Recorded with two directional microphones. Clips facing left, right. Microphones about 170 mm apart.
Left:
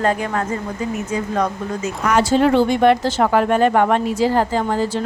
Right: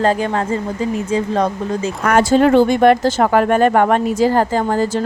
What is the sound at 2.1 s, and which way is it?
Speech, 50° right (ahead or behind).